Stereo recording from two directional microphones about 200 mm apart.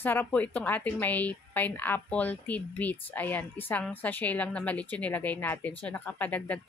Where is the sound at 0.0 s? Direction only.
10° left (ahead or behind).